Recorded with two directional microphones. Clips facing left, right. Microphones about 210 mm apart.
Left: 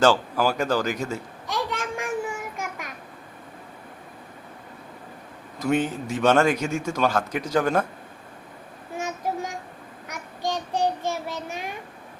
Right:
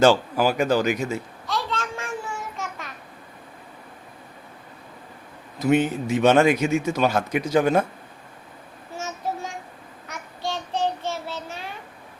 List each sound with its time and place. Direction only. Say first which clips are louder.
0.1 s a man's voice: right 2 dB; 15° right (ahead or behind)
1.5 s a sound: even; 15° left (ahead or behind)
2.6 s babbling: left 1 dB; 10° left (ahead or behind)
5.5 s a man's voice: right 3 dB; 5° right (ahead or behind)
9.0 s child singing: left 2 dB; 15° left (ahead or behind)